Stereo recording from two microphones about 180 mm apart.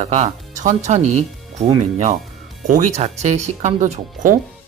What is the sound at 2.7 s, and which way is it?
Speech, 45° right (ahead or behind).